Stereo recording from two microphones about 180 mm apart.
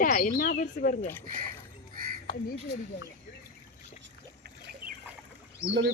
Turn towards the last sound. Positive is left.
turn(degrees=-75)  # may be behind; listen again after turning